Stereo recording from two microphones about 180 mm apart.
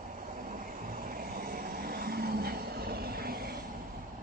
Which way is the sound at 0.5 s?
50° right (ahead or behind).